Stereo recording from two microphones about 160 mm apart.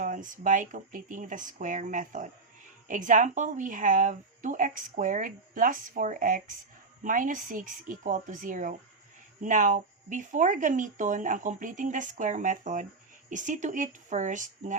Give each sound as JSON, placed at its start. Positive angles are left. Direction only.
{"t": 0.0, "sound": "speech", "side_deg": -50}